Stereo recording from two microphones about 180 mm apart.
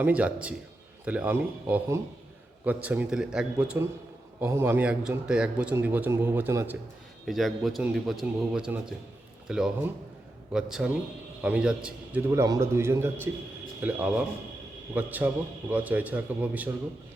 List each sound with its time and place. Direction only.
0.0 s a man's voice: 5° right (ahead or behind)
7.3 s a man's voice: centre (ahead or behind)
12.3 s a man's voice: 15° right (ahead or behind)